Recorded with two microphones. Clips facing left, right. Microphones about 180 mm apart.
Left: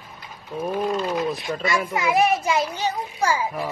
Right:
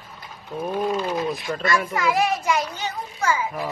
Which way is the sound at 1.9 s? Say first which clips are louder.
Left 2 dB; 20° left (ahead or behind).